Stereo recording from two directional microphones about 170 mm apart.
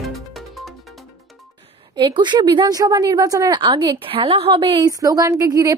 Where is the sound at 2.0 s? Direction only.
25° right (ahead or behind).